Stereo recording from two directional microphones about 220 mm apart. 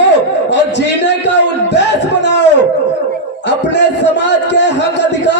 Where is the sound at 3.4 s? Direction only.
50° left (ahead or behind).